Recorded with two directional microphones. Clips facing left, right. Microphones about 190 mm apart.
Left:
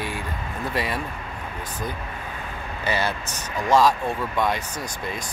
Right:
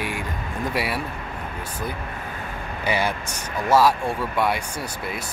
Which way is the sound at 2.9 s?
15° right (ahead or behind).